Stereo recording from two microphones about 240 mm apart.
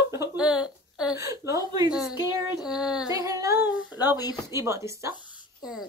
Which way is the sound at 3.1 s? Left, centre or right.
Centre.